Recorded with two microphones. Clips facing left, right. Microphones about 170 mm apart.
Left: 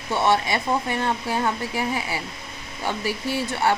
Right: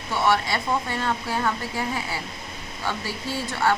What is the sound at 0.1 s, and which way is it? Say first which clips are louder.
Speech: left 2 dB; 20° left (ahead or behind).